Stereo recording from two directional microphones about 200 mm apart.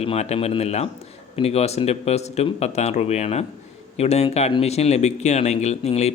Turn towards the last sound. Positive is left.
turn(degrees=35)  # may be behind; listen again after turning